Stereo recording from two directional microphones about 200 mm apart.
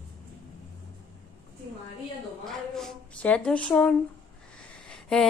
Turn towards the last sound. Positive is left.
turn(degrees=5)  # may be behind; listen again after turning